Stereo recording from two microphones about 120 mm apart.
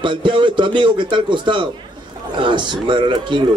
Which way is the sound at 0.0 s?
40° right (ahead or behind).